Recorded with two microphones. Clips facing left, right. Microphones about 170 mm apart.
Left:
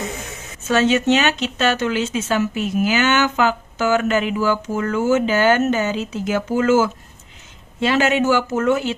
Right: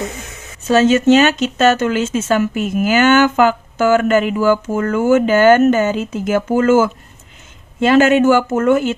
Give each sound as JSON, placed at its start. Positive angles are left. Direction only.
{"t": 0.7, "sound": "speech", "side_deg": -40}